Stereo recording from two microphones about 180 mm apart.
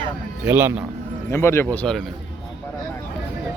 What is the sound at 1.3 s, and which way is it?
Speech, 15° left (ahead or behind).